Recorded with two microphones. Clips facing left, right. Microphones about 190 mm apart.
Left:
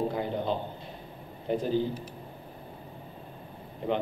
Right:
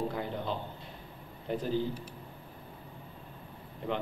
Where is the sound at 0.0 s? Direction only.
20° left (ahead or behind).